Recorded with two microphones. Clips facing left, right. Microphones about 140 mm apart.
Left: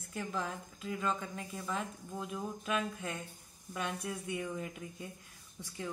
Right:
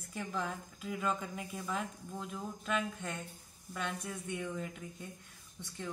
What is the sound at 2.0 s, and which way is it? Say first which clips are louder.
A woman's voice: left 2 dB; 5° left (ahead or behind).